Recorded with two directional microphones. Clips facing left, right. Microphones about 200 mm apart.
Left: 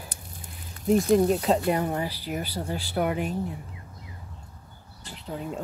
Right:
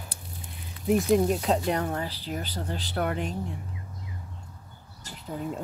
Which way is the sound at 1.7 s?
10° left (ahead or behind).